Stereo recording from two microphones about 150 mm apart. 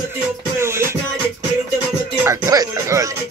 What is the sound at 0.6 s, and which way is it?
Music, 15° right (ahead or behind).